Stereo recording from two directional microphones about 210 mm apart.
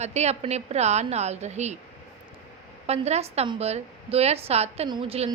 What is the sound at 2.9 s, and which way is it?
A woman's voice, 30° right (ahead or behind).